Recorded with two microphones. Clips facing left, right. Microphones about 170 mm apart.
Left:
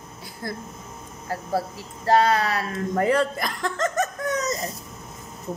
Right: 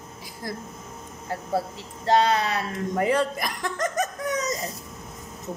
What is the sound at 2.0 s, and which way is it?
Speech, 20° right (ahead or behind).